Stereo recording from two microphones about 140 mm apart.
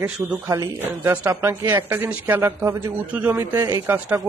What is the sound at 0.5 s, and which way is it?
A woman's voice, 20° right (ahead or behind).